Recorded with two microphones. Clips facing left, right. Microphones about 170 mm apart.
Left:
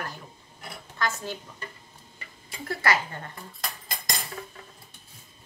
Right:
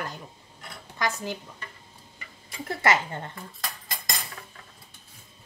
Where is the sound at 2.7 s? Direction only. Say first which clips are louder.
Right 2 dB; 20° right (ahead or behind).